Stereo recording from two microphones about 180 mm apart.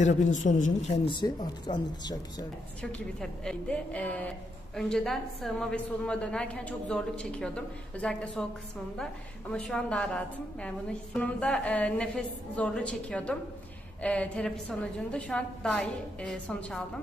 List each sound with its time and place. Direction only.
0.0 s speech: 45° left (ahead or behind)
1.0 s speech: 25° left (ahead or behind)
2.8 s a woman's voice: 5° left (ahead or behind)